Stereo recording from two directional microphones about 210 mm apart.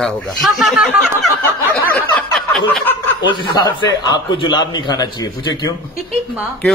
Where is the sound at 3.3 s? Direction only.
20° left (ahead or behind).